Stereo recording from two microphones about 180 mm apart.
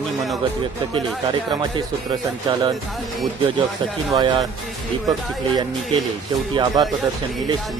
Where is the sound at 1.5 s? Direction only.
25° right (ahead or behind).